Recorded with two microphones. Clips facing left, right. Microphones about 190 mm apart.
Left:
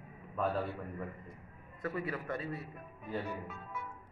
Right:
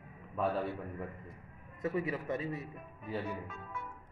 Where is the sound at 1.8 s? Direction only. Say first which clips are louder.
Right 3 dB; 25° right (ahead or behind).